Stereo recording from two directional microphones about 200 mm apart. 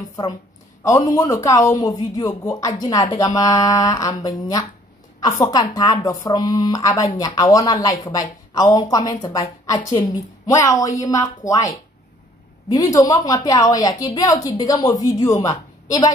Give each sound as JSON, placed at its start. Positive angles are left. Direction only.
{"t": 0.8, "sound": "a woman's voice", "side_deg": 15}